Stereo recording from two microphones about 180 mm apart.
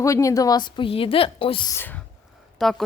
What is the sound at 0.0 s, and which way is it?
A woman's voice, 15° left (ahead or behind).